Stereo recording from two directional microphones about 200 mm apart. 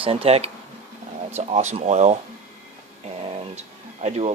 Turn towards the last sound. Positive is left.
turn(degrees=-35)  # may be behind; listen again after turning